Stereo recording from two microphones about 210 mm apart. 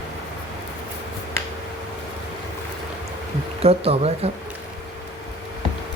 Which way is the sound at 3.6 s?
30° right (ahead or behind).